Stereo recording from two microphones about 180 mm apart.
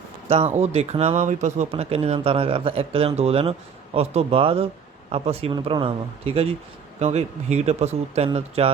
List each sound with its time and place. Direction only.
0.3 s speech: 35° right (ahead or behind)